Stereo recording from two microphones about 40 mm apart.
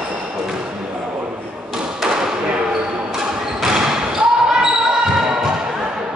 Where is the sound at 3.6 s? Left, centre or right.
Centre.